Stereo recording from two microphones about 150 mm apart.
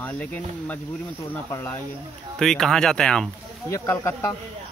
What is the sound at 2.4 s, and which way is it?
Speech, 5° left (ahead or behind).